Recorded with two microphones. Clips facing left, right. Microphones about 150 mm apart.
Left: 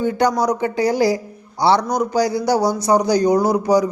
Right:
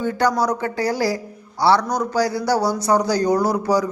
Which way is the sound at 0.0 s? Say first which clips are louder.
Left 2 dB; 15° left (ahead or behind).